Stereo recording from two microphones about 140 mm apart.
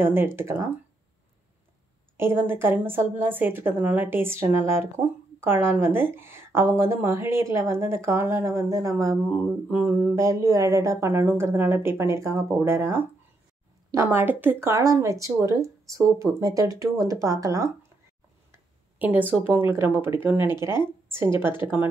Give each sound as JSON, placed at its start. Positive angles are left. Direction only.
{"t": 0.0, "sound": "a woman's voice", "side_deg": -15}
{"t": 2.1, "sound": "a woman's voice", "side_deg": -15}
{"t": 9.4, "sound": "speech", "side_deg": -10}
{"t": 18.5, "sound": "a woman's voice", "side_deg": -10}
{"t": 21.5, "sound": "a woman's voice", "side_deg": -10}